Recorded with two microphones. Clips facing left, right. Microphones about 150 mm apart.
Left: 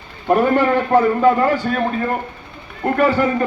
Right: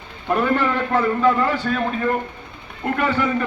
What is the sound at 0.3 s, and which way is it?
A man's voice, 45° left (ahead or behind).